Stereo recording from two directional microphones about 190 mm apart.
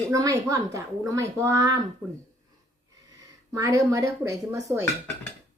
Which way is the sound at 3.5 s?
15° right (ahead or behind).